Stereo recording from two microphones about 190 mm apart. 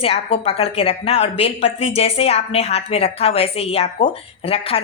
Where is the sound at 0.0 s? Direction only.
30° left (ahead or behind).